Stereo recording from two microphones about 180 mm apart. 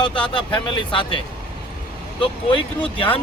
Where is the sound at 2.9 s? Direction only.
30° left (ahead or behind).